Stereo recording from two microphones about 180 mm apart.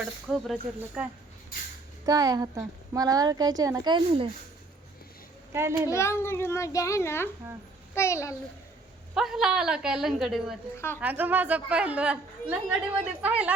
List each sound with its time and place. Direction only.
0.3 s a woman's voice: 5° right (ahead or behind)
2.0 s speech: 20° right (ahead or behind)
5.5 s a child's voice: 15° right (ahead or behind)
5.9 s a child's voice: 15° left (ahead or behind)
9.1 s a woman's voice: centre (ahead or behind)
10.8 s a child's voice: 15° left (ahead or behind)
11.0 s a man's voice: 10° right (ahead or behind)